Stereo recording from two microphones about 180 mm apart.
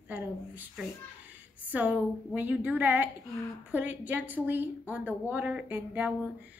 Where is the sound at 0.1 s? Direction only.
10° right (ahead or behind).